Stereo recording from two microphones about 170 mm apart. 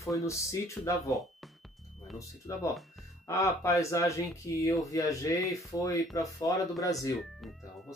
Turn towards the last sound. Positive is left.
turn(degrees=20)  # may be behind; listen again after turning